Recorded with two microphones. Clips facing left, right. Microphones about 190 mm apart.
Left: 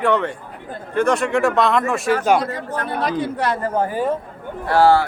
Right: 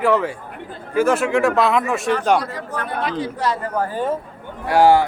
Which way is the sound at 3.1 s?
55° left (ahead or behind).